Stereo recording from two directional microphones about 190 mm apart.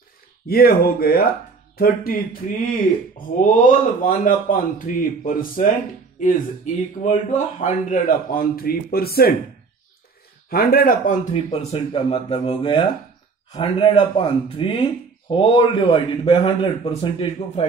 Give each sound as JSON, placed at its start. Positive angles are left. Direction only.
{"t": 0.5, "sound": "speech", "side_deg": 50}
{"t": 10.5, "sound": "speech", "side_deg": 55}
{"t": 11.3, "sound": "speech", "side_deg": 30}